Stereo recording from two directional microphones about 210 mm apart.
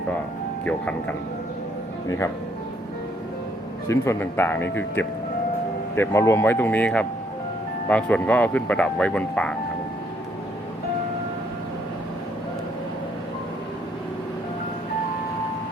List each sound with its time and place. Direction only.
3.8 s speech: 15° left (ahead or behind)
6.0 s speech: 15° left (ahead or behind)